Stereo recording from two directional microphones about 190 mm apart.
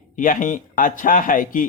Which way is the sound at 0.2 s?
45° left (ahead or behind).